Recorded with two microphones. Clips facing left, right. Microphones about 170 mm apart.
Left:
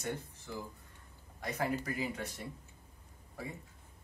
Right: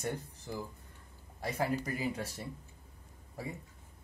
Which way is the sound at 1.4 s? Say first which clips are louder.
Right 2 dB; 10° right (ahead or behind).